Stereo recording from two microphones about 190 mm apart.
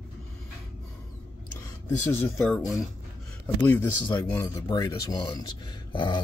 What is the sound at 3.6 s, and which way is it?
Speech, 10° left (ahead or behind).